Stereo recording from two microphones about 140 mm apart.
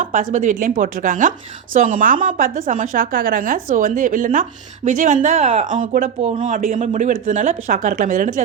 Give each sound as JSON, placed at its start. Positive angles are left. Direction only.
{"t": 0.0, "sound": "speech", "side_deg": -75}
{"t": 5.4, "sound": "speech", "side_deg": -45}
{"t": 5.6, "sound": "speech", "side_deg": -70}